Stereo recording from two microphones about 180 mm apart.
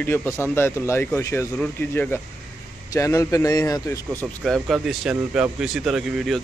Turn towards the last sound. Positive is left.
turn(degrees=-5)  # may be behind; listen again after turning